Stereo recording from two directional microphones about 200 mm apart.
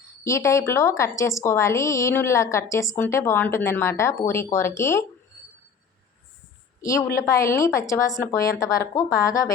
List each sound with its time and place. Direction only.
0.3 s a woman's voice: 15° left (ahead or behind)
6.8 s a woman's voice: 15° left (ahead or behind)